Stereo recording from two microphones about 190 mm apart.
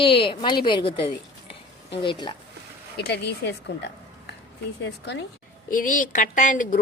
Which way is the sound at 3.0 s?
60° left (ahead or behind).